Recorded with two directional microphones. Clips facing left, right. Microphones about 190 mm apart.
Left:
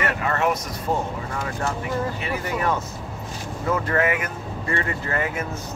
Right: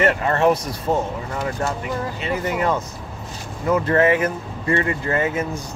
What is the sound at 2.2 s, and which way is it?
Speech, 20° right (ahead or behind).